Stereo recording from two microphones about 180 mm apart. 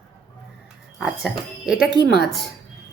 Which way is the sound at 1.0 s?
5° right (ahead or behind).